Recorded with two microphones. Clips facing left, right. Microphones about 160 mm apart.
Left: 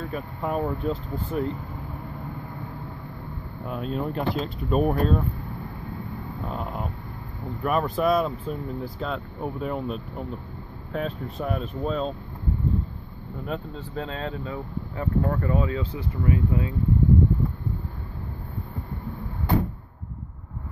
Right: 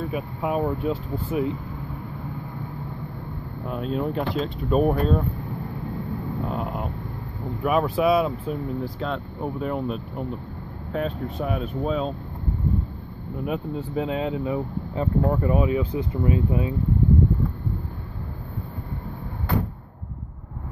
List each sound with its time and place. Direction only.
0.1 s speech: 5° right (ahead or behind)
3.6 s speech: centre (ahead or behind)
6.5 s speech: 5° right (ahead or behind)
13.5 s speech: 15° right (ahead or behind)